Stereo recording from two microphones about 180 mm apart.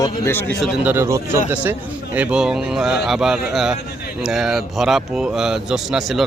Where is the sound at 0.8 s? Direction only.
15° right (ahead or behind).